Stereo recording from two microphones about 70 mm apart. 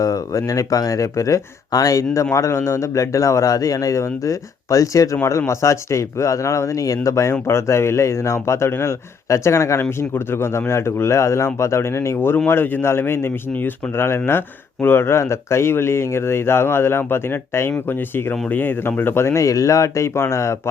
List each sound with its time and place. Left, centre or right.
0.0 s a man's voice: left